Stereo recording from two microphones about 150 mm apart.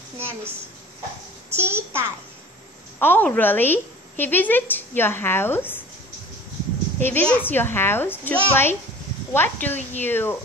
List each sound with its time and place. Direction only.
1.5 s a child's voice: 15° right (ahead or behind)
3.0 s a woman's voice: 10° left (ahead or behind)
7.0 s a woman's voice: 10° left (ahead or behind)